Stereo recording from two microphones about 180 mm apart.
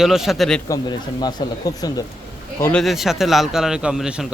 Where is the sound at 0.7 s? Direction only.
20° left (ahead or behind).